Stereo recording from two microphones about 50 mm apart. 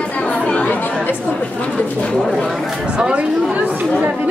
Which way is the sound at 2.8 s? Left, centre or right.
Centre.